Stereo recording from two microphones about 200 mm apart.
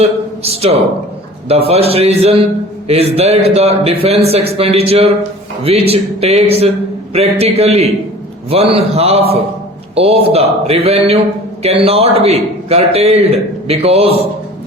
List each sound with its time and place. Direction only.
0.0 s a man's voice: 30° right (ahead or behind)